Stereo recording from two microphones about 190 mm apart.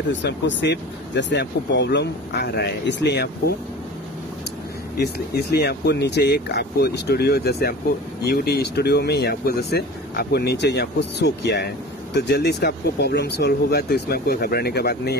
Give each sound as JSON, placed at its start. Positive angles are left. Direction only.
{"t": 0.1, "sound": "speech", "side_deg": 70}
{"t": 4.9, "sound": "speech", "side_deg": 55}